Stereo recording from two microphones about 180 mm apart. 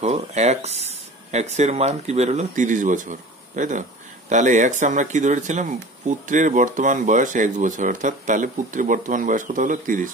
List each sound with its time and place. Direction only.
0.0 s speech: 40° right (ahead or behind)